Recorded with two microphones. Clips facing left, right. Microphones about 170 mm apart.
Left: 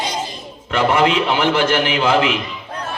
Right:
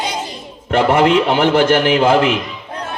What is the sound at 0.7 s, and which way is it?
A man's voice, 50° right (ahead or behind).